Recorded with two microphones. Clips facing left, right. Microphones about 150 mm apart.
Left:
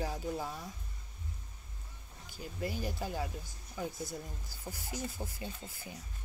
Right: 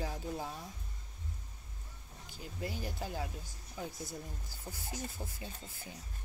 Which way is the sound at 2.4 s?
15° left (ahead or behind).